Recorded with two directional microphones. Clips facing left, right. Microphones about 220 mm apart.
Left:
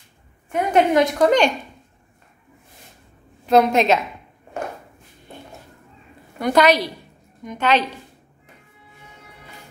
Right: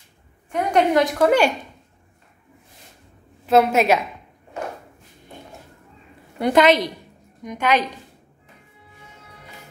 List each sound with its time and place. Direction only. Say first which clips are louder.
0.5 s a woman's voice: left 1 dB; centre (ahead or behind)
3.4 s a woman's voice: left 1 dB; 5° right (ahead or behind)
6.4 s a woman's voice: right 1 dB; 20° right (ahead or behind)